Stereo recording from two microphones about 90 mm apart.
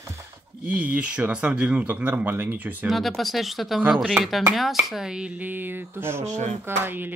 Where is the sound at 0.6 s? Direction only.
20° right (ahead or behind).